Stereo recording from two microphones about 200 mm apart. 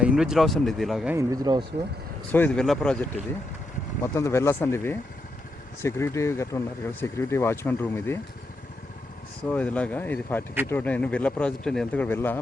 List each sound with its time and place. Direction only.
0.0 s speech: 5° right (ahead or behind)
1.1 s speech: 20° right (ahead or behind)
2.3 s speech: 5° left (ahead or behind)
9.5 s speech: 5° left (ahead or behind)